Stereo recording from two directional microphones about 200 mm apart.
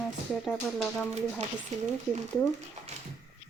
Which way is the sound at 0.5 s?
5° left (ahead or behind).